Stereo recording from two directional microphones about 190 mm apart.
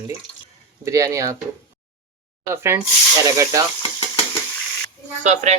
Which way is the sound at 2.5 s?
15° right (ahead or behind).